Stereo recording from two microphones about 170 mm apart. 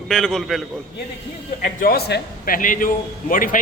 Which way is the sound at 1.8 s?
60° left (ahead or behind).